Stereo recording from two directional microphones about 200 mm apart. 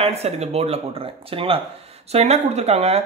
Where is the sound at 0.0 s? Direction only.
30° right (ahead or behind).